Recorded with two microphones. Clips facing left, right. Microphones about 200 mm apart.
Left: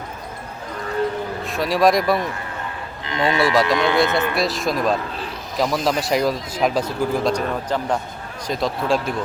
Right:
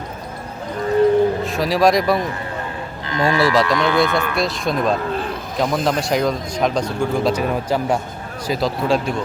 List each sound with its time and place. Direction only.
1.5 s speech: centre (ahead or behind)
3.1 s speech: 25° left (ahead or behind)
4.4 s speech: centre (ahead or behind)
7.3 s a man's voice: 10° right (ahead or behind)